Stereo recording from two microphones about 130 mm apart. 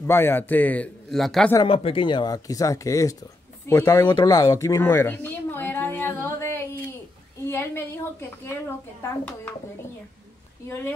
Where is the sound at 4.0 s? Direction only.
35° left (ahead or behind).